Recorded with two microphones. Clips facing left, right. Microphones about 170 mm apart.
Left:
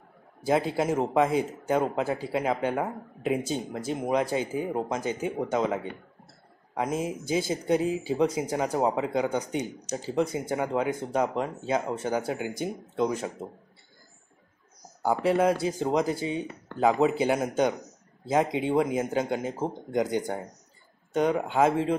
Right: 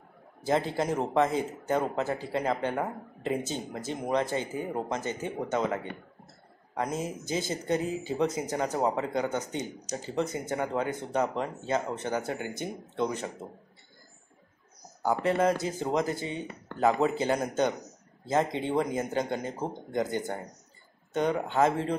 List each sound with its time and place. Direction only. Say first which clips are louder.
0.4 s a man's voice: left 2 dB; 10° left (ahead or behind)
15.0 s a man's voice: left 2 dB; 10° left (ahead or behind)